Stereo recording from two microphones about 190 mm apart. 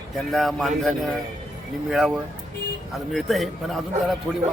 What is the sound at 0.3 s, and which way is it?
A man's voice, centre (ahead or behind).